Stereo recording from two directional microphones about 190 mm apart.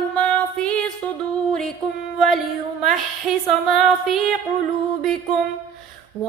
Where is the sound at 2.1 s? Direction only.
Centre (ahead or behind).